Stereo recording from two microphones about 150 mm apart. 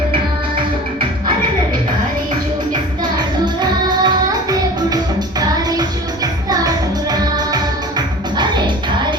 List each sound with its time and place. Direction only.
3.0 s music: 30° right (ahead or behind)
6.5 s music: 25° right (ahead or behind)